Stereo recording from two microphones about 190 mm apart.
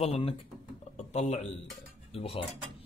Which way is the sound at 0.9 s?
35° left (ahead or behind).